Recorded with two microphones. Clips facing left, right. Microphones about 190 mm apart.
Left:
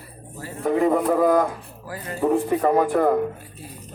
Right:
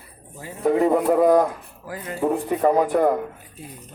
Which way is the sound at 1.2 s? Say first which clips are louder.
Right 2 dB; 25° right (ahead or behind).